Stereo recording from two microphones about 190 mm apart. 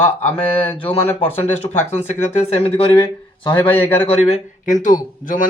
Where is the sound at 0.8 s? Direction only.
30° left (ahead or behind).